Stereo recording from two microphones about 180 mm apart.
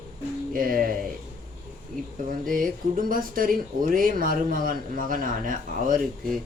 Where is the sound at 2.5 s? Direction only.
50° right (ahead or behind).